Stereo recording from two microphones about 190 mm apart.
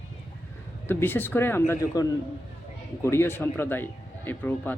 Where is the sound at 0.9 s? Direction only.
10° left (ahead or behind).